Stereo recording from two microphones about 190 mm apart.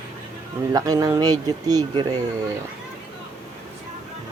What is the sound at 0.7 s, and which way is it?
Speech, 20° right (ahead or behind).